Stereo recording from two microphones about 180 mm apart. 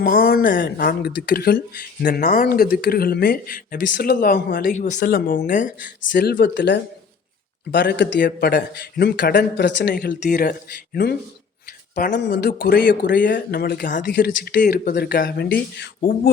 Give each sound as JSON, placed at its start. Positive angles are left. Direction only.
{"t": 0.0, "sound": "speech", "side_deg": 50}
{"t": 6.0, "sound": "a man's voice", "side_deg": 80}
{"t": 8.2, "sound": "speech", "side_deg": 55}
{"t": 10.9, "sound": "speech", "side_deg": 60}